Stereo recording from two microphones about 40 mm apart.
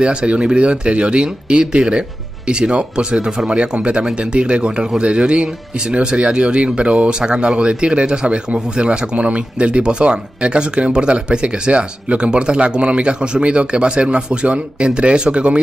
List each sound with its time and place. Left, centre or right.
0.0 s speech: right